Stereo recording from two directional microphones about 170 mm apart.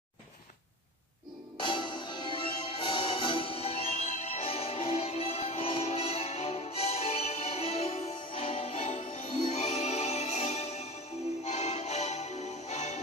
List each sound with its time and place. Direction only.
1.6 s music: 30° left (ahead or behind)